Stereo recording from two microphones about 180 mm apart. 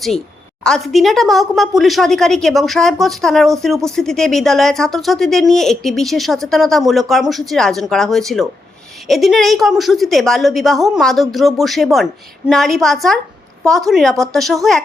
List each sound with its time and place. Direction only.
0.6 s a woman's voice: centre (ahead or behind)